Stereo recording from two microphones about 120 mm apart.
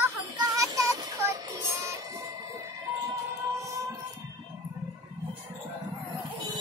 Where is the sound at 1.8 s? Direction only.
25° right (ahead or behind).